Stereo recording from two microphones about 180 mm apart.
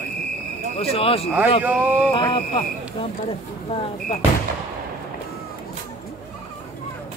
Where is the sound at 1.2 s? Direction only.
5° right (ahead or behind).